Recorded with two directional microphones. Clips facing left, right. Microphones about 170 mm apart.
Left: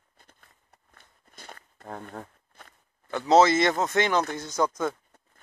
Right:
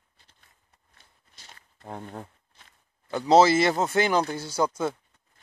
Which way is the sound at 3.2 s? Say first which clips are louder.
Right 1 dB; 30° right (ahead or behind).